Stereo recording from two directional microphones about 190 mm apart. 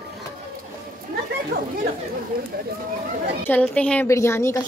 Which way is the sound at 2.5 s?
50° right (ahead or behind).